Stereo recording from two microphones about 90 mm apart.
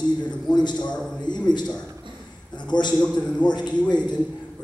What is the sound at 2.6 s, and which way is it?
A man's voice, 55° left (ahead or behind).